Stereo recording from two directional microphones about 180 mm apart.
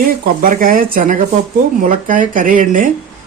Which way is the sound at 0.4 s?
50° right (ahead or behind).